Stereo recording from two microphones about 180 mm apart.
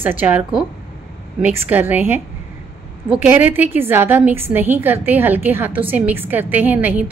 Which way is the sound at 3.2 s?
10° right (ahead or behind).